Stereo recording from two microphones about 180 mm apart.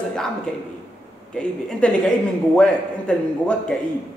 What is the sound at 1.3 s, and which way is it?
A man's voice, 5° left (ahead or behind).